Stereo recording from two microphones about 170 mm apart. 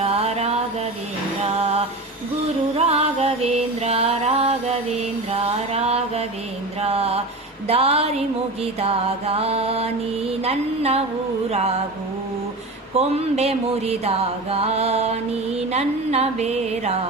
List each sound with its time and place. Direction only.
0.0 s a sound: 35° right (ahead or behind)
1.5 s music: 40° right (ahead or behind)
6.8 s mantra: 35° right (ahead or behind)
13.0 s mantra: 40° right (ahead or behind)